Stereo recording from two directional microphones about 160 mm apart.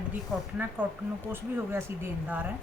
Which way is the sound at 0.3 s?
Centre (ahead or behind).